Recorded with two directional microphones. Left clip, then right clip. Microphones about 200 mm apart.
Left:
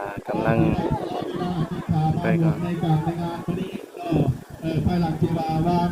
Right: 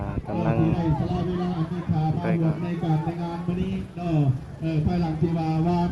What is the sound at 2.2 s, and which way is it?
Speech, centre (ahead or behind).